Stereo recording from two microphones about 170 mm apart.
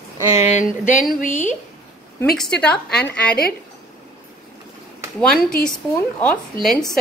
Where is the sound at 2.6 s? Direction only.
5° left (ahead or behind).